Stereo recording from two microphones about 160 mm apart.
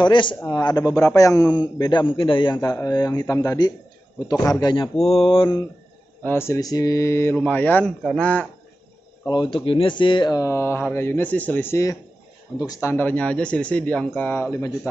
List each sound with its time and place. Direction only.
0.0 s mantra: 30° left (ahead or behind)
0.5 s a man's voice: 25° left (ahead or behind)
5.0 s mantra: 35° left (ahead or behind)
6.2 s speech: 15° left (ahead or behind)
9.3 s a man's voice: 30° left (ahead or behind)